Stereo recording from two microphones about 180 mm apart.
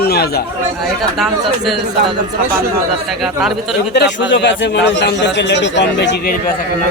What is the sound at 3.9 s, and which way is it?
A man's voice, 75° left (ahead or behind).